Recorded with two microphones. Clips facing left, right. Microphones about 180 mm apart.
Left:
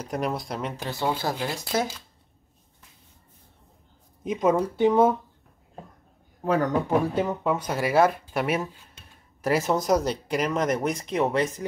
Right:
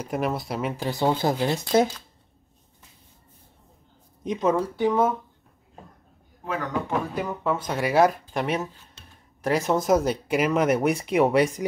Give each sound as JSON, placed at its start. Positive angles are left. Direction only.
{"t": 0.0, "sound": "speech", "side_deg": -5}
{"t": 1.1, "sound": "speech", "side_deg": -20}
{"t": 4.2, "sound": "speech", "side_deg": 5}
{"t": 6.4, "sound": "speech", "side_deg": 35}
{"t": 7.2, "sound": "speech", "side_deg": 15}
{"t": 7.7, "sound": "speech", "side_deg": 0}